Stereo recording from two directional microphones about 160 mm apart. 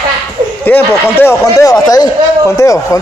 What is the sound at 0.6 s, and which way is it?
Speech, 15° left (ahead or behind).